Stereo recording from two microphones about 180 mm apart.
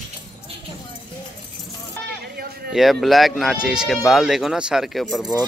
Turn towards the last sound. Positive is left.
turn(degrees=0)  # may be behind; listen again after turning